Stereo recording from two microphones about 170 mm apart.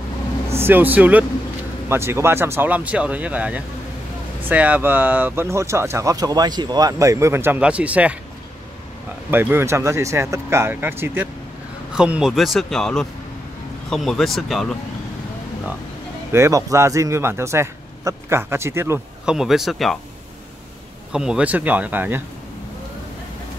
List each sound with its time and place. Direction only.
0.5 s speech: 15° right (ahead or behind)
9.3 s speech: 10° right (ahead or behind)
16.3 s speech: 15° right (ahead or behind)
19.2 s speech: centre (ahead or behind)
21.1 s speech: 5° right (ahead or behind)